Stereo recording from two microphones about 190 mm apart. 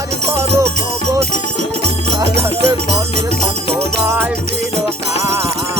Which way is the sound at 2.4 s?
15° right (ahead or behind).